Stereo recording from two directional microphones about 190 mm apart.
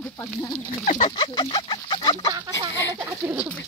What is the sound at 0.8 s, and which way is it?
Speech, 45° left (ahead or behind).